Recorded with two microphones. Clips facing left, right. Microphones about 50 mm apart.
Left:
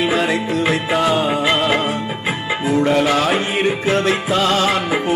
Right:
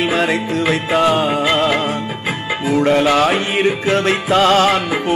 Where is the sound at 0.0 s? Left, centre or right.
Right.